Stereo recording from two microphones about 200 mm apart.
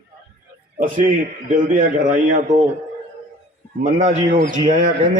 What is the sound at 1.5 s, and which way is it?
Speech, 40° right (ahead or behind).